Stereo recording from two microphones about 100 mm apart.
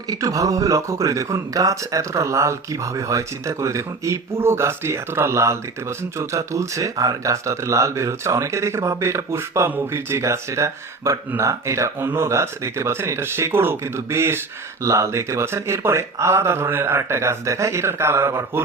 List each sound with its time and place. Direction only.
0.1 s speech: 35° right (ahead or behind)